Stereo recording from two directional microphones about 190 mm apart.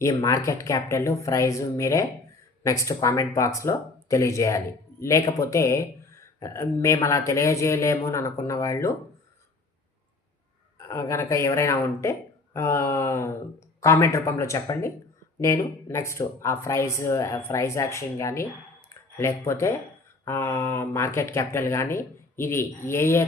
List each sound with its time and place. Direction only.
0.0 s speech: 15° left (ahead or behind)
10.8 s speech: 15° left (ahead or behind)